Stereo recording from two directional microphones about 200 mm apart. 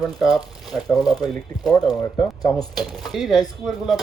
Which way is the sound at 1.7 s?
20° left (ahead or behind).